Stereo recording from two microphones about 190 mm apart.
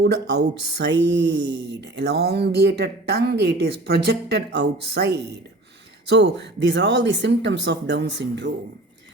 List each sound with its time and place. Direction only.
0.0 s speech: 60° right (ahead or behind)